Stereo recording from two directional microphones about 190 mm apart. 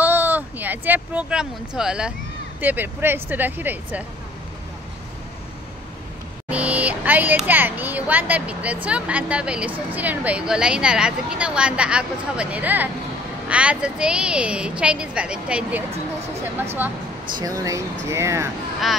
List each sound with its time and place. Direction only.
0.0 s speech: 10° right (ahead or behind)
6.5 s a woman's voice: 5° right (ahead or behind)